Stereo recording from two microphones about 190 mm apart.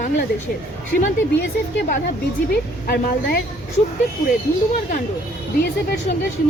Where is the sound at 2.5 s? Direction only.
55° left (ahead or behind).